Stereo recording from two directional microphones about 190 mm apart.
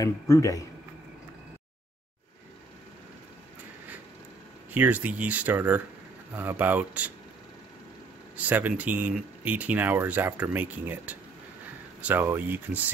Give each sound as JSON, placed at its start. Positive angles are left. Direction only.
{"t": 0.0, "sound": "a man's voice", "side_deg": 15}
{"t": 4.7, "sound": "speech", "side_deg": -10}
{"t": 8.4, "sound": "speech", "side_deg": -10}